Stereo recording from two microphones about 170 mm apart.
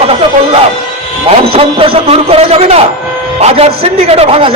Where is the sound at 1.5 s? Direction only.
35° right (ahead or behind).